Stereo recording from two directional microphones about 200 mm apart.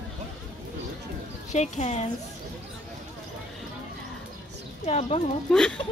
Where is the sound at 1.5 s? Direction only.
35° left (ahead or behind).